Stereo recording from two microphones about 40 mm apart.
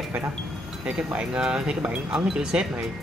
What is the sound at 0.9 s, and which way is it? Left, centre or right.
Speech, right.